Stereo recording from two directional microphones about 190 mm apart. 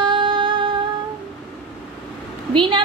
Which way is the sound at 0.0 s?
25° right (ahead or behind).